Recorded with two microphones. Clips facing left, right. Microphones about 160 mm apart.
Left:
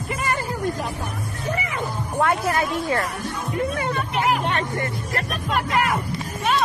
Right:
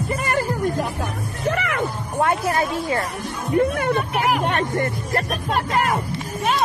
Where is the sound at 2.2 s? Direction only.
25° right (ahead or behind).